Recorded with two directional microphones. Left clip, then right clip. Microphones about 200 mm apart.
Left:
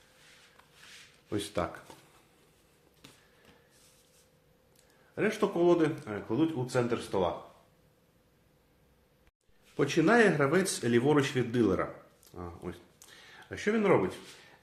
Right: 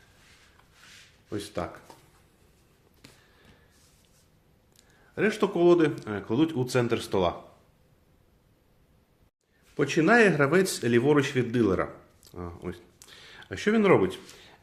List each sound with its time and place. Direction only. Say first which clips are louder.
1.3 s speech: even; 10° left (ahead or behind)
5.1 s speech: right 4 dB; 25° right (ahead or behind)
9.7 s a man's voice: right 4 dB; 15° right (ahead or behind)